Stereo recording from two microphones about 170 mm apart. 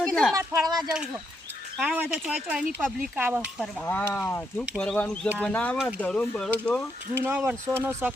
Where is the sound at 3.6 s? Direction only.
10° left (ahead or behind).